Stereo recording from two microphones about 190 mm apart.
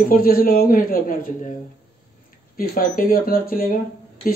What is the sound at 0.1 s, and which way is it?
Speech, 50° left (ahead or behind).